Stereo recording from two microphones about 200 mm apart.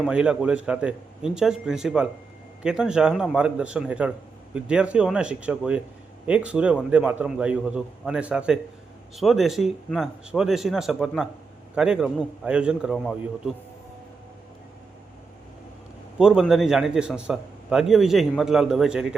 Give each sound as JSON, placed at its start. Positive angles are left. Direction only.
{"t": 0.0, "sound": "a man's voice", "side_deg": -5}
{"t": 16.1, "sound": "a man's voice", "side_deg": -5}